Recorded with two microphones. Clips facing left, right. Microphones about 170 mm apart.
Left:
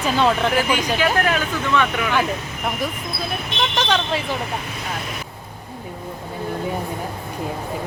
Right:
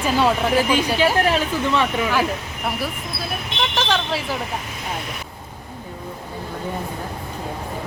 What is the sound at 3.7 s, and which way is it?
Speech, 5° right (ahead or behind).